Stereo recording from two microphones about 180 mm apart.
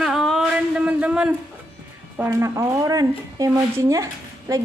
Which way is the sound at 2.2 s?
15° right (ahead or behind).